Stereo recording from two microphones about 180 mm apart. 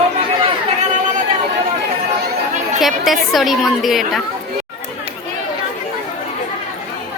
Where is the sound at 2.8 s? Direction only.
Centre (ahead or behind).